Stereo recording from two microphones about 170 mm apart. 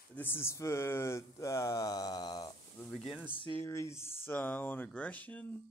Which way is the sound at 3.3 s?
30° left (ahead or behind).